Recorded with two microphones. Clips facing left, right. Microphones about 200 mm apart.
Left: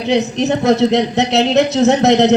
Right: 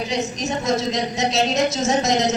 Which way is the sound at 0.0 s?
65° left (ahead or behind).